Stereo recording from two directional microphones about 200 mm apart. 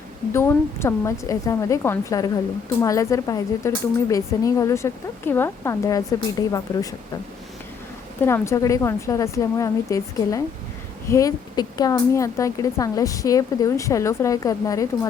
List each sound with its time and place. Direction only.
0.3 s speech: 15° left (ahead or behind)
8.2 s speech: 15° left (ahead or behind)